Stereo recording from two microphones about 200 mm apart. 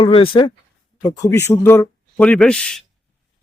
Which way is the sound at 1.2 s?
10° left (ahead or behind).